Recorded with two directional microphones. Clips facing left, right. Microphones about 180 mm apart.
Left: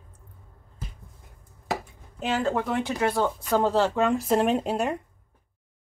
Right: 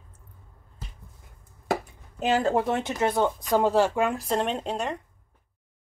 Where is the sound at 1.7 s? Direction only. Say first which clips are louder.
Right 3 dB; 45° right (ahead or behind).